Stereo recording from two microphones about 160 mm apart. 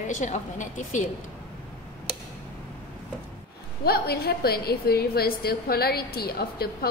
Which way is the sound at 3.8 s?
75° left (ahead or behind).